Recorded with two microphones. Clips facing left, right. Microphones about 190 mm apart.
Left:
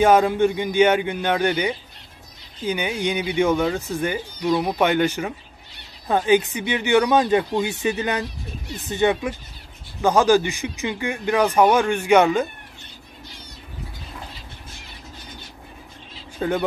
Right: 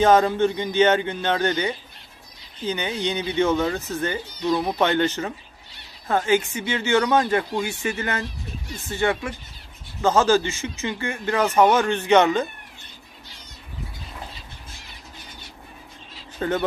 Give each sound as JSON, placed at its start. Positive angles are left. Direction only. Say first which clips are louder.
{"t": 0.0, "sound": "speech", "louder": "left 1 dB", "side_deg": 10}
{"t": 16.3, "sound": "speech", "louder": "left 1 dB", "side_deg": 10}